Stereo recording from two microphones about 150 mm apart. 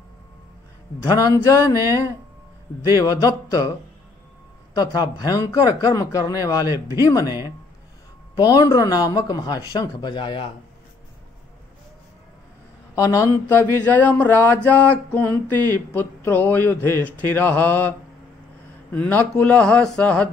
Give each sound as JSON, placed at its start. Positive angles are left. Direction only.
{"t": 1.0, "sound": "a man's voice", "side_deg": 25}
{"t": 3.0, "sound": "a man's voice", "side_deg": 25}
{"t": 4.7, "sound": "a man's voice", "side_deg": 30}
{"t": 7.2, "sound": "speech", "side_deg": -20}
{"t": 8.4, "sound": "a man's voice", "side_deg": 25}
{"t": 12.9, "sound": "a man's voice", "side_deg": 20}
{"t": 13.8, "sound": "speech", "side_deg": 10}
{"t": 18.9, "sound": "speech", "side_deg": 10}